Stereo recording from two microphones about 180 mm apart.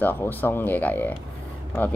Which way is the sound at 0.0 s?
10° left (ahead or behind).